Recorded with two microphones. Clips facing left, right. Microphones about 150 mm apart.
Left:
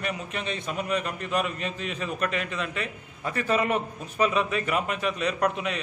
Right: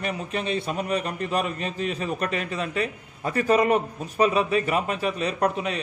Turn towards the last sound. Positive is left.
turn(degrees=-35)  # may be behind; listen again after turning